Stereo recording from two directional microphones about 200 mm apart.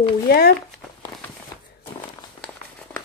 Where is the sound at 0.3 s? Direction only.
50° left (ahead or behind).